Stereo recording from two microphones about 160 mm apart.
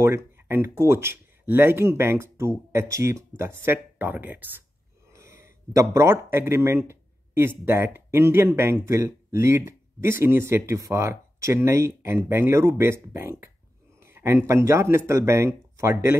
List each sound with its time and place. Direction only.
0.0 s a man's voice: 15° right (ahead or behind)